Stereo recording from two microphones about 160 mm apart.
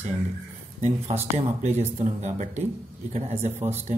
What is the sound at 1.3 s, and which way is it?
Speech, 45° right (ahead or behind).